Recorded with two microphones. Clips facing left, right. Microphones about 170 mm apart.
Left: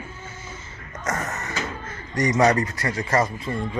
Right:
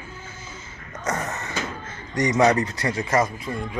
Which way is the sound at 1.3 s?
25° right (ahead or behind).